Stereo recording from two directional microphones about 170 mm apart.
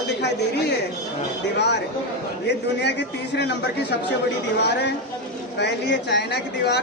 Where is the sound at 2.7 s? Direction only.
90° left.